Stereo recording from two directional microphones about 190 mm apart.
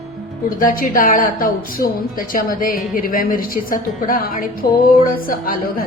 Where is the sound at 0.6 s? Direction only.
45° left (ahead or behind).